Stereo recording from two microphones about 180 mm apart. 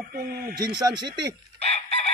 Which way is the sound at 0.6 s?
20° right (ahead or behind).